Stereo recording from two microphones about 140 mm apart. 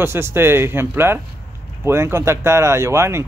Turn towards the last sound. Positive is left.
turn(degrees=-20)  # may be behind; listen again after turning